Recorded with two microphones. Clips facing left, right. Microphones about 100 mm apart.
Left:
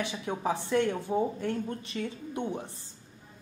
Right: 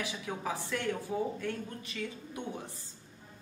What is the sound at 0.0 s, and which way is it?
Speech, 30° left (ahead or behind).